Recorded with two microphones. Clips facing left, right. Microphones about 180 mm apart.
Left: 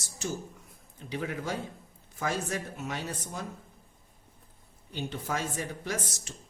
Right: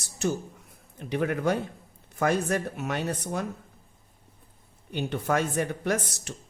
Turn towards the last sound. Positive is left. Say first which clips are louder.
# right 7 dB
turn(degrees=-60)  # may be behind; listen again after turning